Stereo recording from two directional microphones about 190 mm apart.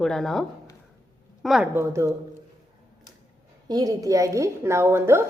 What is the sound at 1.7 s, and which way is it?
Speech, 15° right (ahead or behind).